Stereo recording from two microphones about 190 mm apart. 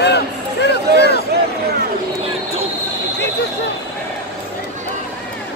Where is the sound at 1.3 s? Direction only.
55° right (ahead or behind).